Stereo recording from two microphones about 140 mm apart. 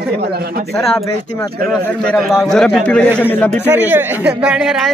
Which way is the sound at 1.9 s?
5° left (ahead or behind).